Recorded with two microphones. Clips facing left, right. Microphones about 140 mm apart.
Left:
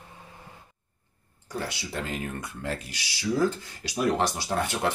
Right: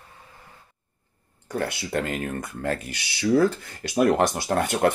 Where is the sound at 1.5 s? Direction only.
55° right (ahead or behind).